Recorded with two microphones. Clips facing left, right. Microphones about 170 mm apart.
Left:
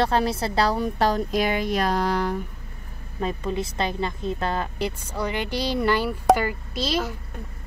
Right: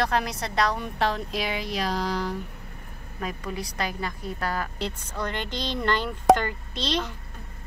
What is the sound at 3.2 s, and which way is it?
A woman's voice, 25° left (ahead or behind).